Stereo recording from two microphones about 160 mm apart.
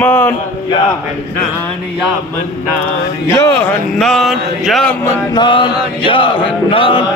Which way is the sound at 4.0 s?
Centre (ahead or behind).